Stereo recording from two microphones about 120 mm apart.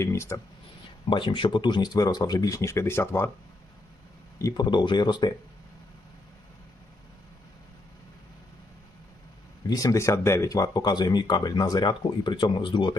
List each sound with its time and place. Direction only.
0.0 s speech: 25° left (ahead or behind)
1.1 s speech: 45° left (ahead or behind); by 3.2 s 20° left (ahead or behind)
4.4 s speech: 30° left (ahead or behind)
9.6 s speech: 30° left (ahead or behind)